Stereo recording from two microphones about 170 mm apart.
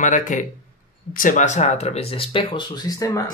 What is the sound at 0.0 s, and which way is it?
Speech, 50° left (ahead or behind).